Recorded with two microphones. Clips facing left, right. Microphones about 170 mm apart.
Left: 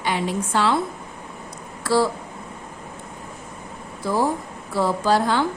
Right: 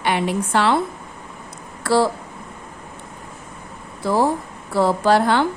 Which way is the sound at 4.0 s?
65° right (ahead or behind).